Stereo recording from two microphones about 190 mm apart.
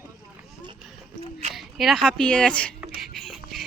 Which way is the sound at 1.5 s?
Centre (ahead or behind).